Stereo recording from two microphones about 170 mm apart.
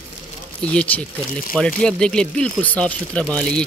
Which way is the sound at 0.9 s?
10° left (ahead or behind).